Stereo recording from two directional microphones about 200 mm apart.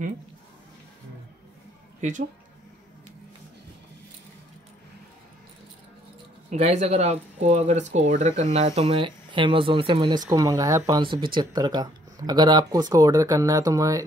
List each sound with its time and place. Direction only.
2.0 s speech: 40° right (ahead or behind)
6.5 s speech: 35° right (ahead or behind); by 14.0 s 15° right (ahead or behind)